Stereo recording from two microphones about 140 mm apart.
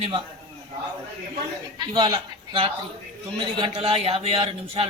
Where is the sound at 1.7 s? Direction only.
35° right (ahead or behind).